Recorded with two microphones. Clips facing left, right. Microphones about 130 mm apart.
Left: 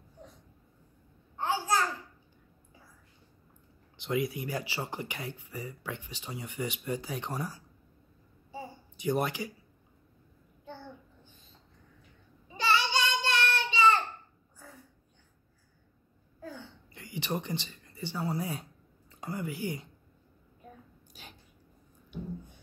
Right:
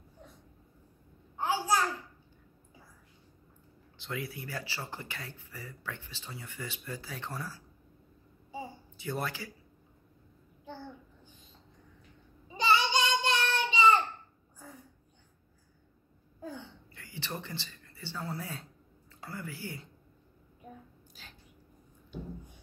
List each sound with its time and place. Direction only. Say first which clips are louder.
1.3 s a sound: even; 10° right (ahead or behind)
4.0 s speech: left 8 dB; 15° left (ahead or behind)
8.9 s speech: left 7 dB; 15° left (ahead or behind)
12.5 s child singing: right 1 dB; 20° right (ahead or behind)
16.9 s speech: left 7 dB; 20° left (ahead or behind)
21.1 s a sound: left 6 dB; 20° left (ahead or behind)